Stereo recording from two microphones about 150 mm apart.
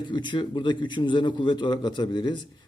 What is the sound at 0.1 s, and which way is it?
A man's voice, 30° left (ahead or behind).